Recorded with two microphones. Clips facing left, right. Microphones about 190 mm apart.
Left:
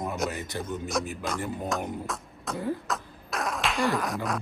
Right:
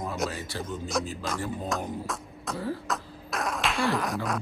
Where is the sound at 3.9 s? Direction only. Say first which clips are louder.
Even; centre (ahead or behind).